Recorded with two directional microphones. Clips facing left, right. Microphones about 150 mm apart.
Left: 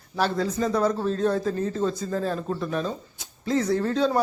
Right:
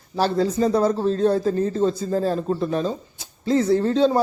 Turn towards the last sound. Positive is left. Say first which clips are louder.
# right 5 dB
turn(degrees=-30)  # may be behind; listen again after turning